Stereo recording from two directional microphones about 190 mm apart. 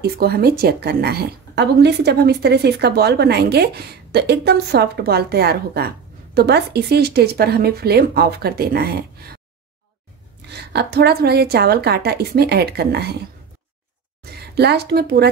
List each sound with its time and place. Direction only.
0.0 s a woman's voice: 55° right (ahead or behind)
10.5 s a woman's voice: 60° right (ahead or behind)
14.2 s a woman's voice: 60° right (ahead or behind)